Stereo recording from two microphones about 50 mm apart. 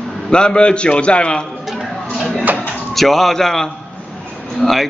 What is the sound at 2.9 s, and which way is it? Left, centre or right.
A man's voice, centre.